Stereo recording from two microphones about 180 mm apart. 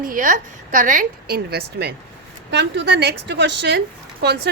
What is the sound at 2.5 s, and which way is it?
A woman's voice, 75° right (ahead or behind).